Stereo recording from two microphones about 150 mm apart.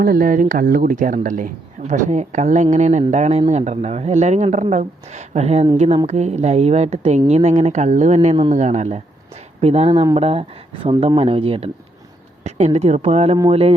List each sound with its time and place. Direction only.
0.0 s speech: 75° right (ahead or behind); by 9.9 s 45° right (ahead or behind)
9.9 s speech: 25° right (ahead or behind)
10.2 s speech: 40° right (ahead or behind)
12.5 s speech: 50° right (ahead or behind)